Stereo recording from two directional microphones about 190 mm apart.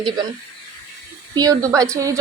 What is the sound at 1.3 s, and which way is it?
Speech, 20° right (ahead or behind).